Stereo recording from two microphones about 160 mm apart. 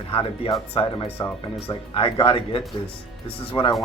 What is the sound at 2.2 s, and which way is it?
Speech, 35° left (ahead or behind).